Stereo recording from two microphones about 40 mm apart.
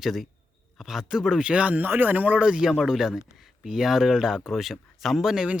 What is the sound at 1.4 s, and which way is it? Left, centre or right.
Speech, right.